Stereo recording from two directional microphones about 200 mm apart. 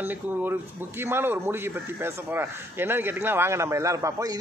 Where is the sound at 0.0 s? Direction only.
10° right (ahead or behind).